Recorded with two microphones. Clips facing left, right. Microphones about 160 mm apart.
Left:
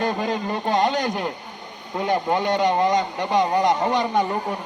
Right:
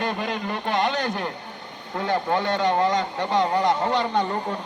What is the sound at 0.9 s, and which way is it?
Speech, 15° left (ahead or behind).